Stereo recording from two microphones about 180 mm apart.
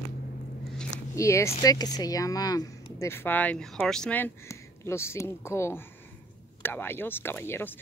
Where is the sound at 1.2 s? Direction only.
15° left (ahead or behind).